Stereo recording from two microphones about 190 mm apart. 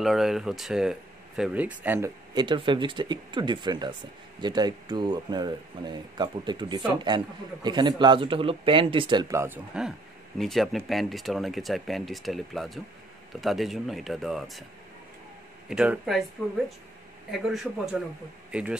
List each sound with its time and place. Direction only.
0.0 s a man's voice: centre (ahead or behind)
9.8 s speech: centre (ahead or behind)
15.7 s speech: 5° right (ahead or behind)
17.3 s speech: centre (ahead or behind)